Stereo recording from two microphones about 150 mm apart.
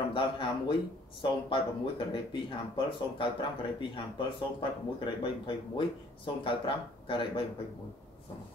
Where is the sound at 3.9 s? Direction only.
35° left (ahead or behind).